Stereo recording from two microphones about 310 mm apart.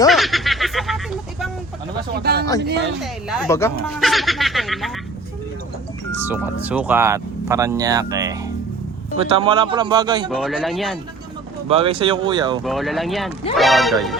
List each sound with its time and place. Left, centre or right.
0.1 s a sound: centre
2.1 s speech: right
3.0 s speech: centre
6.2 s speech: centre
10.2 s speech: centre
11.7 s speech: centre
12.6 s speech: centre